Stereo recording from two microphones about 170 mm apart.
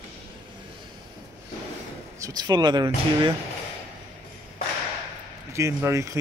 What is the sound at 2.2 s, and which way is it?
Speech, 25° right (ahead or behind).